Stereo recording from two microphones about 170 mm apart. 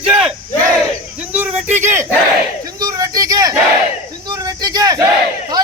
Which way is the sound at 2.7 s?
20° right (ahead or behind).